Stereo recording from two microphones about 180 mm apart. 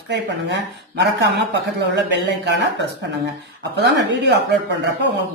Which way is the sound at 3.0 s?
70° right (ahead or behind).